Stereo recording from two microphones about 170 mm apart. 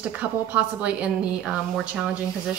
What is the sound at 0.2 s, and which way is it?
A woman's voice, 10° right (ahead or behind).